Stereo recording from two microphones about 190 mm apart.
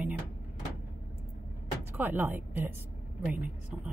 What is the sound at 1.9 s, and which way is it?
A woman's voice, 10° right (ahead or behind).